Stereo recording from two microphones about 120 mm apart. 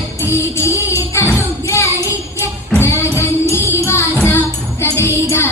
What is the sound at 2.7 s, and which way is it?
Music, 20° left (ahead or behind).